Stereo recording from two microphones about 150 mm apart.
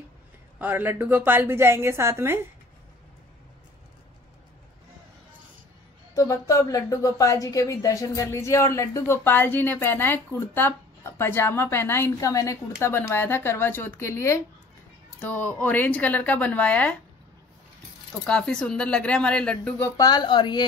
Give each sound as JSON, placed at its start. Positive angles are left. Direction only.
{"t": 0.6, "sound": "a woman's voice", "side_deg": -10}
{"t": 6.1, "sound": "a woman's voice", "side_deg": 20}
{"t": 18.2, "sound": "speech", "side_deg": 5}
{"t": 20.0, "sound": "speech", "side_deg": 25}